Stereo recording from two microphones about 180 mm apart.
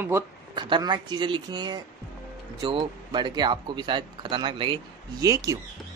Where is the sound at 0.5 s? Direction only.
25° right (ahead or behind).